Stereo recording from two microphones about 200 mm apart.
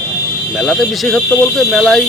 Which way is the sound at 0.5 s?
Centre (ahead or behind).